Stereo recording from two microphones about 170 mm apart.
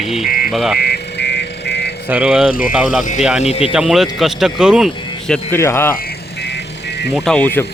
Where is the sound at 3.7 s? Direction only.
Centre (ahead or behind).